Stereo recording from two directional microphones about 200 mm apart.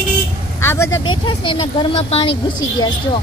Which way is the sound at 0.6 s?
15° left (ahead or behind).